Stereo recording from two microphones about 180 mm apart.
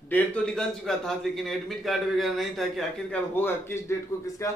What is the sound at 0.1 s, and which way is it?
A man's voice, 5° left (ahead or behind).